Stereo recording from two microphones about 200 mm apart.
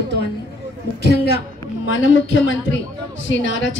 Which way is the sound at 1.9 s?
70° left (ahead or behind).